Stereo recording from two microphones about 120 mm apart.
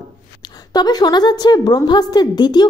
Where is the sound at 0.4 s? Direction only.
35° left (ahead or behind).